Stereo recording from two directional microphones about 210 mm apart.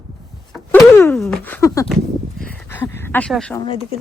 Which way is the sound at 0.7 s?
15° left (ahead or behind).